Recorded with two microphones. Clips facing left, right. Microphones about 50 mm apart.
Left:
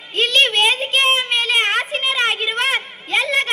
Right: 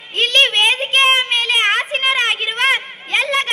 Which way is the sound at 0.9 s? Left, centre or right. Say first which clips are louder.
Right 5 dB; right.